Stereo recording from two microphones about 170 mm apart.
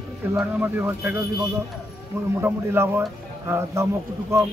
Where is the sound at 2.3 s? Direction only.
15° right (ahead or behind).